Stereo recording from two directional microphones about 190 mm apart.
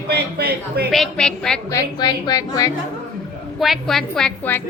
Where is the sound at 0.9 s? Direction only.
Centre (ahead or behind).